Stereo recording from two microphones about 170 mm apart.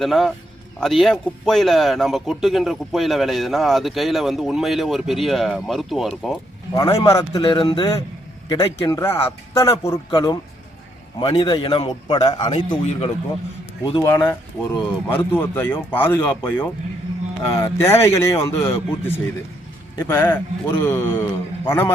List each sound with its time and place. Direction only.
0.0 s speech: centre (ahead or behind)
6.7 s a man's voice: 20° left (ahead or behind)
7.3 s a man's voice: 30° left (ahead or behind); by 16.0 s 10° left (ahead or behind)
17.4 s a man's voice: 20° left (ahead or behind)